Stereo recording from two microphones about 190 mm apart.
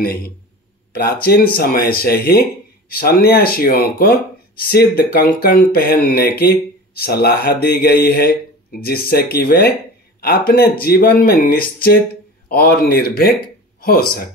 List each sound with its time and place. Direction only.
0.0 s speech: 50° left (ahead or behind)